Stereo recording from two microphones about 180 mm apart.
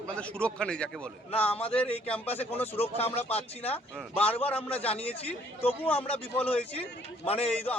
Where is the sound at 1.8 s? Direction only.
35° left (ahead or behind).